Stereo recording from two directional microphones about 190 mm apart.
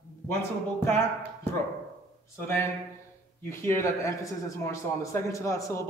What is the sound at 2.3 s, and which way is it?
A man's voice, 10° left (ahead or behind).